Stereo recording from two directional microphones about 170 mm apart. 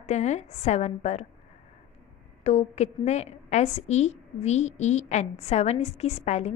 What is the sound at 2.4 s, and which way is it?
A woman's voice, 40° left (ahead or behind).